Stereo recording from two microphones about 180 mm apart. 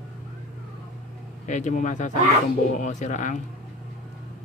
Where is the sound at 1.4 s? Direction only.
45° left (ahead or behind).